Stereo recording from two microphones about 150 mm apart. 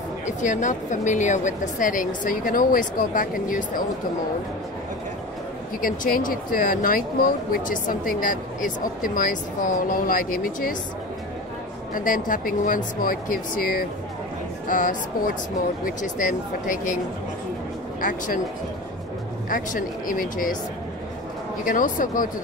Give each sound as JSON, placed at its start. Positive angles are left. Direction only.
{"t": 0.4, "sound": "a woman's voice", "side_deg": 55}
{"t": 5.8, "sound": "speech", "side_deg": 65}
{"t": 11.9, "sound": "a woman's voice", "side_deg": 65}
{"t": 18.0, "sound": "a woman's voice", "side_deg": 65}
{"t": 19.5, "sound": "a woman's voice", "side_deg": 65}
{"t": 21.6, "sound": "a woman's voice", "side_deg": 65}